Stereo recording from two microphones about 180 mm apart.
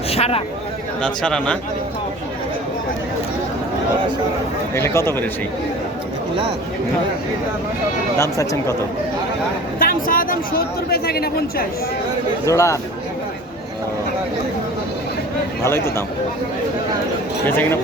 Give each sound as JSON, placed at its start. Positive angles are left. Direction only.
{"t": 0.1, "sound": "a sound", "side_deg": 35}
{"t": 1.0, "sound": "a man's voice", "side_deg": 5}
{"t": 4.7, "sound": "speech", "side_deg": 15}
{"t": 8.2, "sound": "speech", "side_deg": 15}
{"t": 9.7, "sound": "speech", "side_deg": 50}
{"t": 12.5, "sound": "speech", "side_deg": 15}
{"t": 15.6, "sound": "speech", "side_deg": 15}
{"t": 17.4, "sound": "speech", "side_deg": 10}